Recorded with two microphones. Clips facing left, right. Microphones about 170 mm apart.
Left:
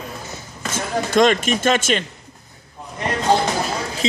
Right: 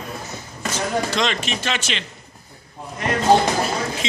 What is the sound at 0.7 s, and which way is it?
Speech, 50° left (ahead or behind).